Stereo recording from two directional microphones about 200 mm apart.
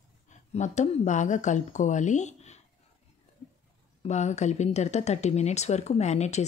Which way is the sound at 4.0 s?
35° left (ahead or behind).